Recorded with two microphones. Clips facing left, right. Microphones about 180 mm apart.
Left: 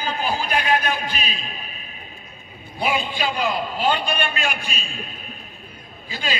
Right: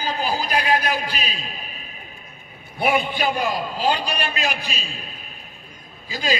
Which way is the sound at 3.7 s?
35° right (ahead or behind).